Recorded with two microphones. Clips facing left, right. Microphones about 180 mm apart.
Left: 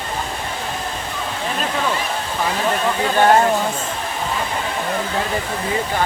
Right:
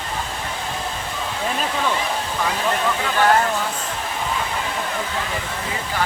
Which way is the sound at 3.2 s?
25° left (ahead or behind).